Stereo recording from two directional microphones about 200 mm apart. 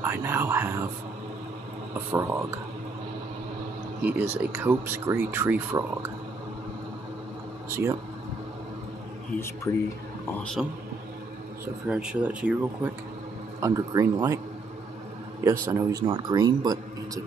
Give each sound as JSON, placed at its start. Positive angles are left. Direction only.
{"t": 0.0, "sound": "speech", "side_deg": -10}
{"t": 2.0, "sound": "speech", "side_deg": -10}
{"t": 4.4, "sound": "speech", "side_deg": -10}
{"t": 7.7, "sound": "speech", "side_deg": -15}
{"t": 9.7, "sound": "speech", "side_deg": 15}
{"t": 10.6, "sound": "speech", "side_deg": 0}
{"t": 15.6, "sound": "speech", "side_deg": -15}